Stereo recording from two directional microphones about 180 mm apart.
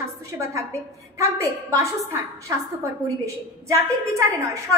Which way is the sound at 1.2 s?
15° right (ahead or behind).